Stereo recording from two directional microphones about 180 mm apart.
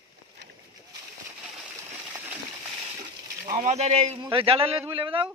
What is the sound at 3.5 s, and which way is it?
Speech, 40° right (ahead or behind).